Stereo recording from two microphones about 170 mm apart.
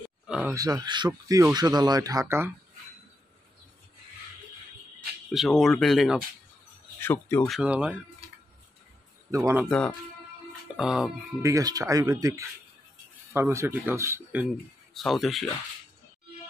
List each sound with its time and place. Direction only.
0.3 s speech: 5° right (ahead or behind)
0.6 s speech: 25° right (ahead or behind)
5.3 s speech: centre (ahead or behind)
7.0 s speech: 10° left (ahead or behind)
7.4 s speech: 5° right (ahead or behind)
9.3 s speech: 15° right (ahead or behind)
10.8 s speech: 5° right (ahead or behind)
11.4 s speech: 20° right (ahead or behind)
15.0 s speech: centre (ahead or behind)